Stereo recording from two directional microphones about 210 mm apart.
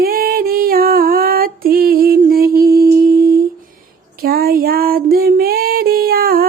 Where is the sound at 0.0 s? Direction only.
45° right (ahead or behind).